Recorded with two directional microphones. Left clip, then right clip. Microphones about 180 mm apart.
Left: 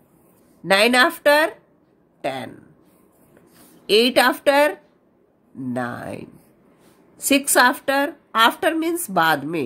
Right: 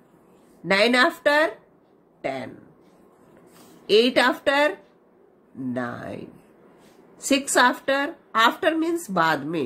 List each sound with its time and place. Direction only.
0.7 s speech: 40° left (ahead or behind)
3.8 s speech: 40° left (ahead or behind)